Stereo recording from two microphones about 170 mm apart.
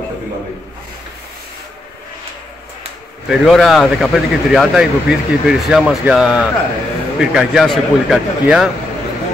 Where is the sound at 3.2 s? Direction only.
Centre (ahead or behind).